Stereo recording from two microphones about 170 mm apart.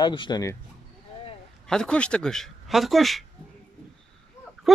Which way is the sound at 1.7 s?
5° left (ahead or behind).